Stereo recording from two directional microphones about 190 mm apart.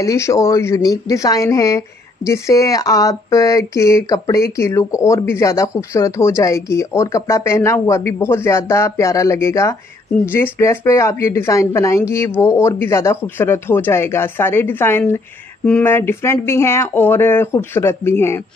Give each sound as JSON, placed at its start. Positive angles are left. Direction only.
{"t": 0.0, "sound": "a woman's voice", "side_deg": 15}